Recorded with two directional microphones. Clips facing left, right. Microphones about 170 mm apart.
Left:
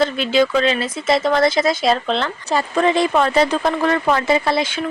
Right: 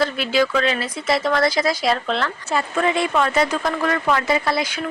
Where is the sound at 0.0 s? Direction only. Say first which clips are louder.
Left 3 dB; 25° left (ahead or behind).